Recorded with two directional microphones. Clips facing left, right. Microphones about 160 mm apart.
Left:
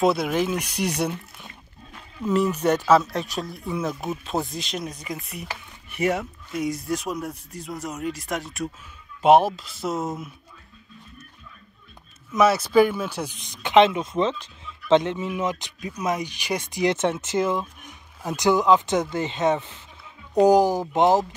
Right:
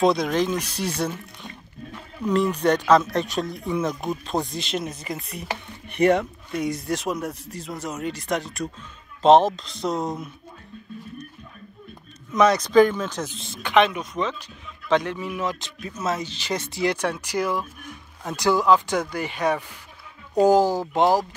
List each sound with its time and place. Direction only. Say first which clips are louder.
0.0 s speech: right 1 dB; 5° left (ahead or behind)
12.4 s speech: right 1 dB; 5° left (ahead or behind); by 21.4 s 20° left (ahead or behind)